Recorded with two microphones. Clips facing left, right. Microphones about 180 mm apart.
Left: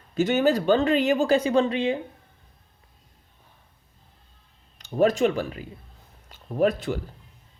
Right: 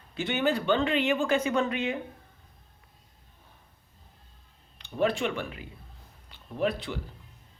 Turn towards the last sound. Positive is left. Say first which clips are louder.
# left 7 dB
turn(degrees=45)  # may be behind; listen again after turning